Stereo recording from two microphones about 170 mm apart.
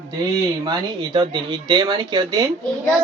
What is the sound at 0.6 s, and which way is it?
Speech, 25° right (ahead or behind).